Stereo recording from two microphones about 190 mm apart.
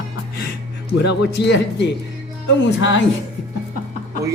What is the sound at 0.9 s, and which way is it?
Speech, 60° left (ahead or behind).